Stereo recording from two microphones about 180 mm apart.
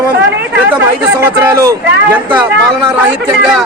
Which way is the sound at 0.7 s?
10° right (ahead or behind).